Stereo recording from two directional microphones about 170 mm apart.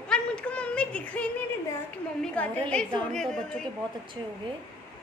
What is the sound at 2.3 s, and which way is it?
A woman's voice, 10° left (ahead or behind).